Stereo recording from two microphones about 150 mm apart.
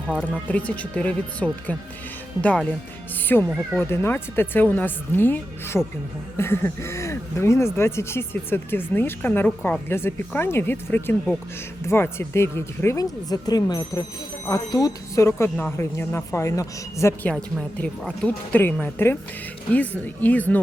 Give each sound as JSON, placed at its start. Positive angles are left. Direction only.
{"t": 0.4, "sound": "speech", "side_deg": 10}
{"t": 17.3, "sound": "speech", "side_deg": 5}